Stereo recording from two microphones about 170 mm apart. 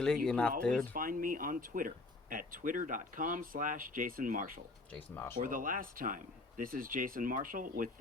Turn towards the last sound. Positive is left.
turn(degrees=-55)  # may be behind; listen again after turning